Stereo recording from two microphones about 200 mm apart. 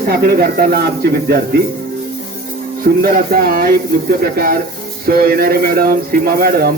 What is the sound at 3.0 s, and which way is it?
Speech, 45° right (ahead or behind).